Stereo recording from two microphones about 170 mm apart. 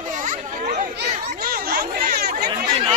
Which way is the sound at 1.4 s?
65° right (ahead or behind).